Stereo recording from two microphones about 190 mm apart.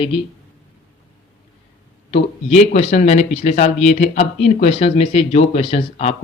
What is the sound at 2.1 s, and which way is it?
Speech, 35° left (ahead or behind).